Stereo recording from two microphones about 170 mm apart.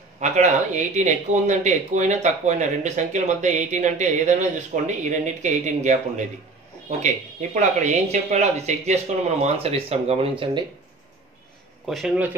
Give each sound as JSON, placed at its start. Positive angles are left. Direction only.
{"t": 0.2, "sound": "speech", "side_deg": -45}
{"t": 11.9, "sound": "speech", "side_deg": 0}